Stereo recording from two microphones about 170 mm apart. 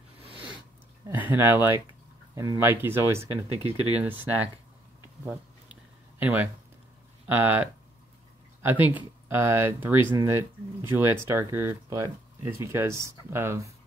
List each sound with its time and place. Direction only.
1.0 s speech: 10° right (ahead or behind)
3.2 s speech: 35° right (ahead or behind)
3.9 s speech: 10° right (ahead or behind)
5.2 s a sound: 10° right (ahead or behind)
7.2 s speech: 10° right (ahead or behind)